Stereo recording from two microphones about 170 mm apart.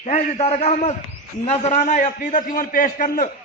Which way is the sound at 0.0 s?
40° left (ahead or behind).